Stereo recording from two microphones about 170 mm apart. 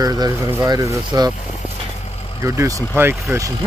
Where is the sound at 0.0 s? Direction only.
20° right (ahead or behind).